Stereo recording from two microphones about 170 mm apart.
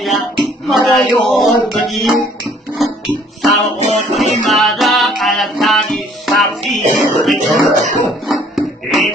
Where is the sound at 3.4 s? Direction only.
Centre (ahead or behind).